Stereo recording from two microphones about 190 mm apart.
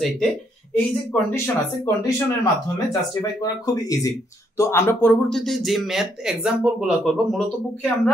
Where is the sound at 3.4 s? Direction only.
20° left (ahead or behind).